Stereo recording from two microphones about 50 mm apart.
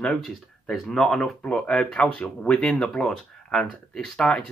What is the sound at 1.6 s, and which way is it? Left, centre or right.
Speech, centre.